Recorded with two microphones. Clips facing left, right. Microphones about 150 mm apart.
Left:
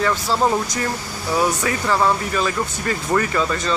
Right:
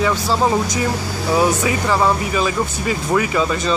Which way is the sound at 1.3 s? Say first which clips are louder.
Right 3 dB; 15° right (ahead or behind).